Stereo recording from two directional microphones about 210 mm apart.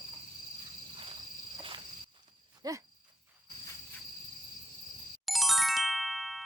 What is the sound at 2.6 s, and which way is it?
Insect, 15° right (ahead or behind).